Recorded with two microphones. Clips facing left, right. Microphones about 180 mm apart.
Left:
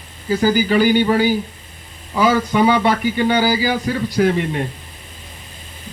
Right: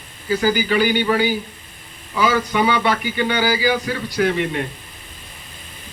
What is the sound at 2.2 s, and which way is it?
A man's voice, 45° left (ahead or behind).